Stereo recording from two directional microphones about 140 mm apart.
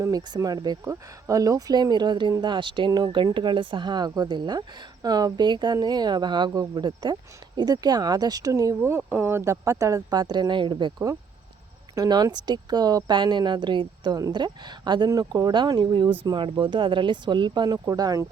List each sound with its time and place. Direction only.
0.0 s speech: 25° right (ahead or behind)